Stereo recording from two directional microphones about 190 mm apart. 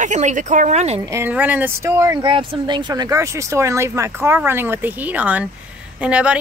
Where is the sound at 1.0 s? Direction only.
15° right (ahead or behind).